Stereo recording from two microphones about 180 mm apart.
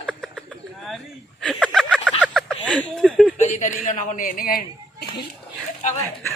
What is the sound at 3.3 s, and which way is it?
Speech, 45° left (ahead or behind).